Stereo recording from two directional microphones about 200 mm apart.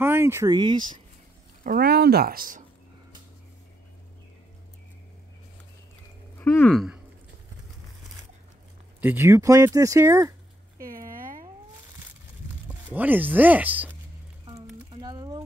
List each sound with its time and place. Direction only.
0.0 s speech: 10° right (ahead or behind)
1.6 s speech: 50° right (ahead or behind)
6.3 s speech: 10° left (ahead or behind)
9.0 s speech: 10° right (ahead or behind)
10.8 s a sound: 45° right (ahead or behind)
12.6 s speech: 10° right (ahead or behind)
14.9 s a sound: 20° right (ahead or behind)